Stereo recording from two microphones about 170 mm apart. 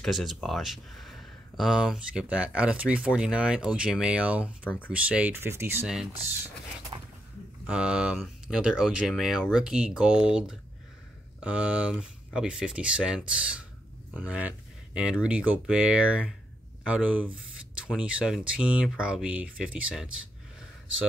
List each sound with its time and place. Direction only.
0.0 s speech: centre (ahead or behind)
6.9 s a sound: 30° right (ahead or behind)
7.6 s speech: 5° right (ahead or behind)
11.4 s speech: 10° right (ahead or behind)